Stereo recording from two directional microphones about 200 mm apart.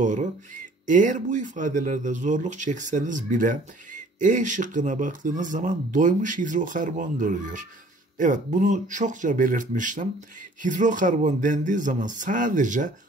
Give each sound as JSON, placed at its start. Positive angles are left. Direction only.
{"t": 0.0, "sound": "speech", "side_deg": -40}